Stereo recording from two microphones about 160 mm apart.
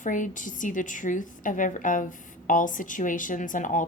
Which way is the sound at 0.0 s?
55° left (ahead or behind).